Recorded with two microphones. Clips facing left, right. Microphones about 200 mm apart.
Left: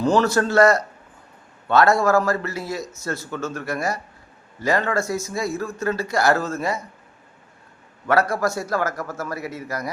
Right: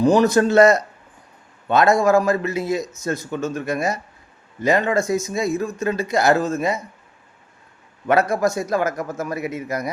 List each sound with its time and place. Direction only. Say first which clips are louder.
0.0 s a man's voice: right 4 dB; 15° right (ahead or behind)
8.0 s speech: right 2 dB; 20° right (ahead or behind)